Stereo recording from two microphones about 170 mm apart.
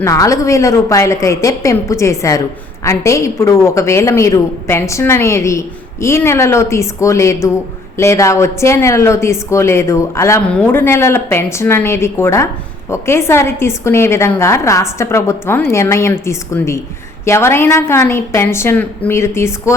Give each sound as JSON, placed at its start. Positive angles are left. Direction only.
{"t": 0.0, "sound": "a woman's voice", "side_deg": 20}